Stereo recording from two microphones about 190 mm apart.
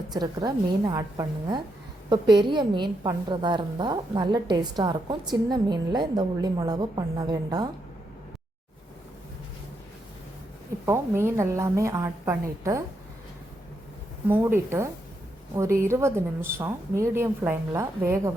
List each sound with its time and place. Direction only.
0.1 s a woman's voice: 20° right (ahead or behind)
10.8 s a woman's voice: 15° right (ahead or behind)
14.3 s a woman's voice: 10° right (ahead or behind)